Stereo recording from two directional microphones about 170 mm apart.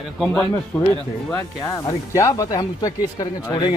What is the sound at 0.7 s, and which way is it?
Speech, 15° left (ahead or behind).